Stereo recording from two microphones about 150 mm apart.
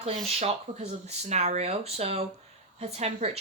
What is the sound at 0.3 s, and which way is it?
Speech, 45° right (ahead or behind).